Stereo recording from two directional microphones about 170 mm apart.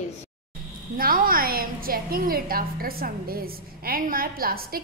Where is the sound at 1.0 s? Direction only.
55° right (ahead or behind).